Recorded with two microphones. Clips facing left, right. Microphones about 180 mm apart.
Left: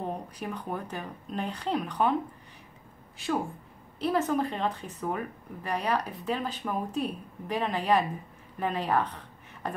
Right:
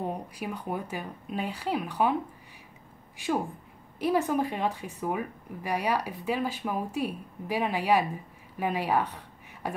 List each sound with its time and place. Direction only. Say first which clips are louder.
0.0 s speech: right 1 dB; 10° right (ahead or behind)
4.0 s speech: right 1 dB; 10° right (ahead or behind)